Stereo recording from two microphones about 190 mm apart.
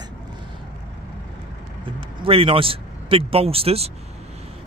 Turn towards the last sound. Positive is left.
turn(degrees=-30)  # may be behind; listen again after turning